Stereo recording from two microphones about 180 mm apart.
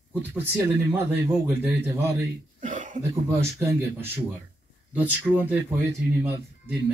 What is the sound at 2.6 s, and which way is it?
Cough, 45° right (ahead or behind).